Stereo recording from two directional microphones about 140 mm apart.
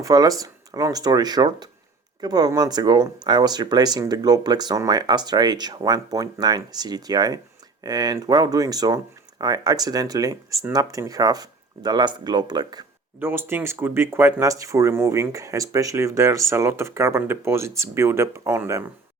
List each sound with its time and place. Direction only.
0.0 s speech: 25° right (ahead or behind)
13.1 s speech: 15° right (ahead or behind)